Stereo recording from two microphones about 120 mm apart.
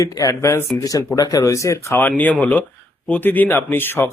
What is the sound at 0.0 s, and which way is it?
Speech, 25° left (ahead or behind).